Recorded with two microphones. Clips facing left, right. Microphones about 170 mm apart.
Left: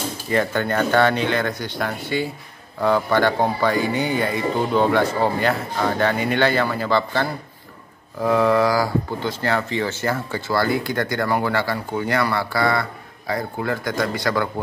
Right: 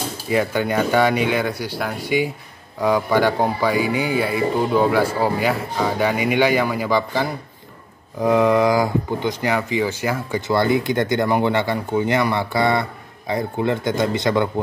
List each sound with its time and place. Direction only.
0.3 s speech: 10° right (ahead or behind)